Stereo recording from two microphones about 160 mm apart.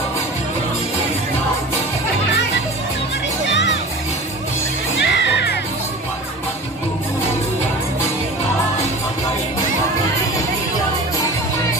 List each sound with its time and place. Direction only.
3.4 s music: 90° left
4.9 s crowd: 90° left